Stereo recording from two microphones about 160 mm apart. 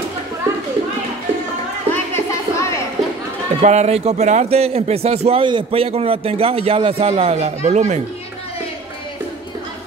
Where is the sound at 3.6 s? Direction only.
45° right (ahead or behind).